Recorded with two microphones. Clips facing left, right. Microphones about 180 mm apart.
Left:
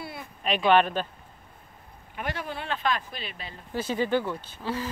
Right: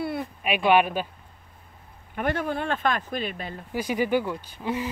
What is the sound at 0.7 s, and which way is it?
Speech, 10° right (ahead or behind).